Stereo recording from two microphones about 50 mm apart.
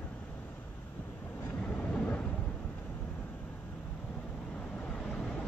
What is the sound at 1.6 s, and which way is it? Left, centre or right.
Vehicle, left.